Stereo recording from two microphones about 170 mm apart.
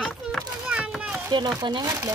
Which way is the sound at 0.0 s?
5° left (ahead or behind).